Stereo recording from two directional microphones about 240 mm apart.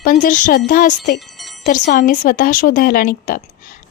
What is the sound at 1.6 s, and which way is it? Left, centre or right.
A woman's voice, left.